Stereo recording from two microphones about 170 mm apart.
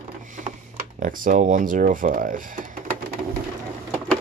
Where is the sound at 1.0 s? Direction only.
50° right (ahead or behind).